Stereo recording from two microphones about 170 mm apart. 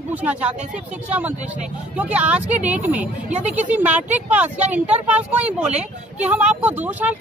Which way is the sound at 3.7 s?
10° right (ahead or behind).